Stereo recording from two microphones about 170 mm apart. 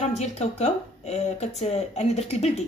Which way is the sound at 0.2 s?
40° left (ahead or behind).